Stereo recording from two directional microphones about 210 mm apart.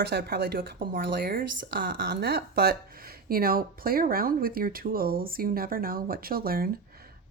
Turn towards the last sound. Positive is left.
turn(degrees=-45)  # may be behind; listen again after turning